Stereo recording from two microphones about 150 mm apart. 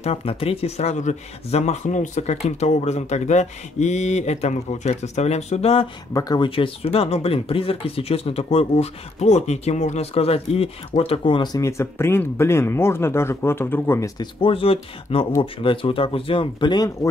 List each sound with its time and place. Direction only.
0.0 s speech: 40° left (ahead or behind)
6.1 s speech: 25° left (ahead or behind)